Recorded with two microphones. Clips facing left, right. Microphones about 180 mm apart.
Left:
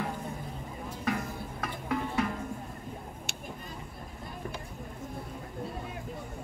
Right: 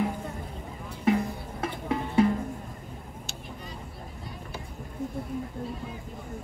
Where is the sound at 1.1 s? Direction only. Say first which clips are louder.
Right 8 dB; 25° right (ahead or behind).